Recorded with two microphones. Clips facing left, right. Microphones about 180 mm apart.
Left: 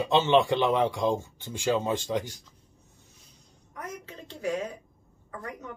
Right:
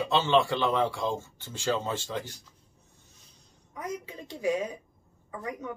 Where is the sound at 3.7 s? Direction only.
15° right (ahead or behind).